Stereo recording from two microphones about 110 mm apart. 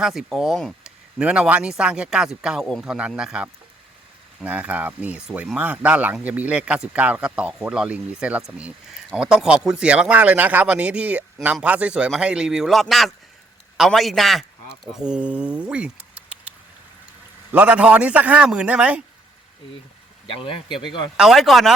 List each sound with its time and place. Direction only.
0.0 s speech: 5° right (ahead or behind)
20.3 s speech: 55° left (ahead or behind)
21.2 s speech: centre (ahead or behind)